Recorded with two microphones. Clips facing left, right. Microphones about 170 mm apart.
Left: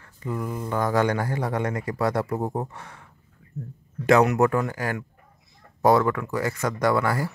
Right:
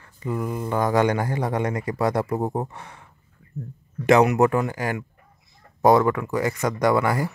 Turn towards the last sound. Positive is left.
turn(degrees=-15)  # may be behind; listen again after turning